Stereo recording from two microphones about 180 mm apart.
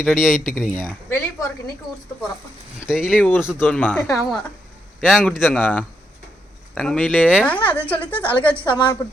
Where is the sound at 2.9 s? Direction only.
5° right (ahead or behind).